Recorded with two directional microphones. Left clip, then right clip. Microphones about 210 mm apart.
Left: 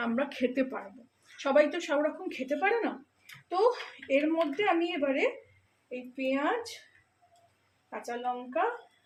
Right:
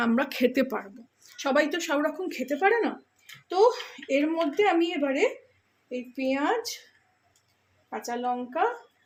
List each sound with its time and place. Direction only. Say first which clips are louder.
0.0 s speech: right 6 dB; 55° right (ahead or behind)
7.9 s speech: right 5 dB; 40° right (ahead or behind)